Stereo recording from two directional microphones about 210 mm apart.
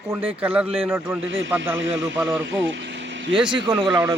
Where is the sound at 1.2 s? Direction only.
65° right (ahead or behind).